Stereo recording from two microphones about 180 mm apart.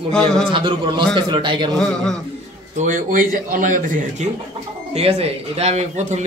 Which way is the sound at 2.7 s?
45° right (ahead or behind).